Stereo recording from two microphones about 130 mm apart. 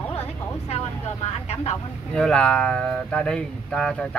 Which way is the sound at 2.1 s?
5° left (ahead or behind).